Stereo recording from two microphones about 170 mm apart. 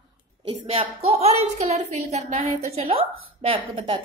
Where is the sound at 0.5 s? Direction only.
35° right (ahead or behind).